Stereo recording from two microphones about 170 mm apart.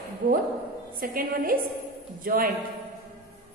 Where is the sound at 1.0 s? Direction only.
55° right (ahead or behind).